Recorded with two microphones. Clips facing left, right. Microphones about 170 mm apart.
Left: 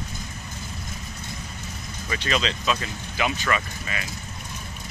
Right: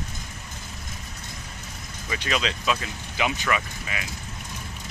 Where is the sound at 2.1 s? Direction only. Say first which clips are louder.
Left 1 dB; 10° right (ahead or behind).